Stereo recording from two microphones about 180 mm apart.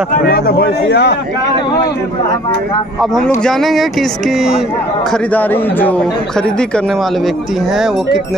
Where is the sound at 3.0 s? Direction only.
Centre (ahead or behind).